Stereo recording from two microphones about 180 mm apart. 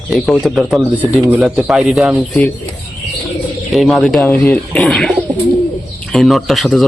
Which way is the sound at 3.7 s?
Centre (ahead or behind).